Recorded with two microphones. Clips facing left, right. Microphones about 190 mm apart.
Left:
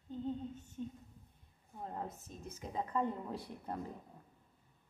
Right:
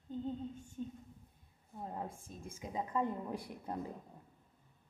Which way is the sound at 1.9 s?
10° right (ahead or behind).